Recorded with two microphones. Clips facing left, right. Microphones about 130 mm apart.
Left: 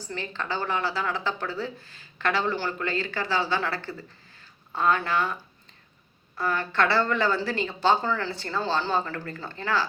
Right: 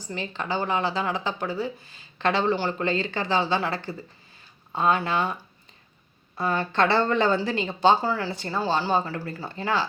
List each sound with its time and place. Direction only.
0.0 s a woman's voice: 15° right (ahead or behind)